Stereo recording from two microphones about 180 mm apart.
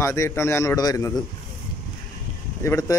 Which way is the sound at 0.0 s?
15° left (ahead or behind).